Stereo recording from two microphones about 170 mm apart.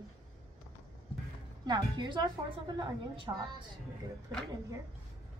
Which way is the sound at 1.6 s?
25° right (ahead or behind).